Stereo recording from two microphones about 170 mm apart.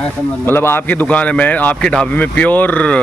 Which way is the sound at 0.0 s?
15° left (ahead or behind).